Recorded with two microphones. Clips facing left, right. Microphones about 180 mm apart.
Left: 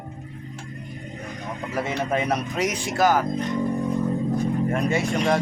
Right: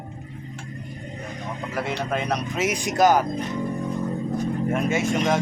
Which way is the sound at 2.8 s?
20° right (ahead or behind).